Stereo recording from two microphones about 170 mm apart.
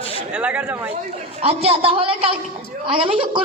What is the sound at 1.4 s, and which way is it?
A woman's voice, 35° right (ahead or behind).